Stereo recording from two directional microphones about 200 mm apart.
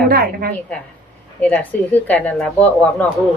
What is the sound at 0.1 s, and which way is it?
Speech, 50° right (ahead or behind).